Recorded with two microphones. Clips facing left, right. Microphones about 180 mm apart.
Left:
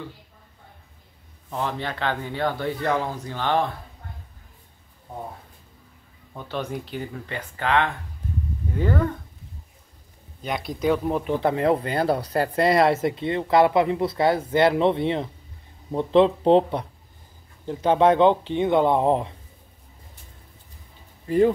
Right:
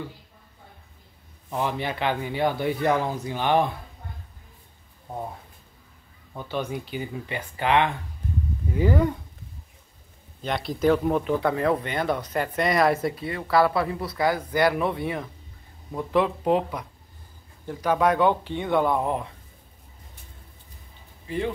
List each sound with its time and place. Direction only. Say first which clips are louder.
1.5 s speech: right 1 dB; 10° right (ahead or behind)
6.3 s speech: even; 5° right (ahead or behind)
10.8 s speech: right 2 dB; 5° left (ahead or behind)
11.2 s speech: left 2 dB; 25° left (ahead or behind)